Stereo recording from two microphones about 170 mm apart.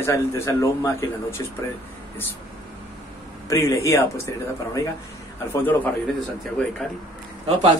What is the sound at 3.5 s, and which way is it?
Speech, 20° left (ahead or behind).